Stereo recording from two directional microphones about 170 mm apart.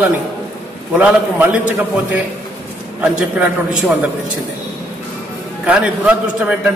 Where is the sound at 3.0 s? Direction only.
5° right (ahead or behind).